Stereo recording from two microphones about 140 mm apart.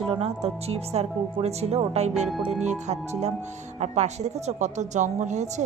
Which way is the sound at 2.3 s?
5° right (ahead or behind).